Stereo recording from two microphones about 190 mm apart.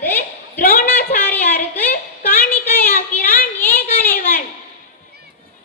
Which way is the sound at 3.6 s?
10° left (ahead or behind).